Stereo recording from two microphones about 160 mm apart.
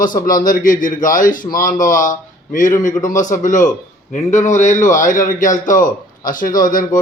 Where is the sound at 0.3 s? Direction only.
60° left (ahead or behind).